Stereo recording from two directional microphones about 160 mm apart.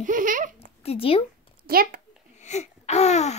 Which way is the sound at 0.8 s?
35° left (ahead or behind).